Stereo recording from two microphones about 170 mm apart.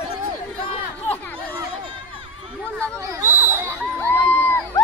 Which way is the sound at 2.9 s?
20° right (ahead or behind).